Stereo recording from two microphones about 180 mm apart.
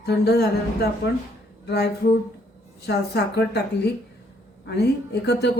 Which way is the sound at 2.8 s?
65° left (ahead or behind).